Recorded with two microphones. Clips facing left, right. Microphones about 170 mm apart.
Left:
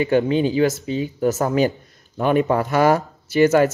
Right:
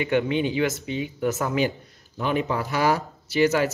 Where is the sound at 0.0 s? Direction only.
35° left (ahead or behind).